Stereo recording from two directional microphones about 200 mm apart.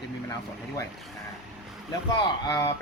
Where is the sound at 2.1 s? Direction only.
15° left (ahead or behind).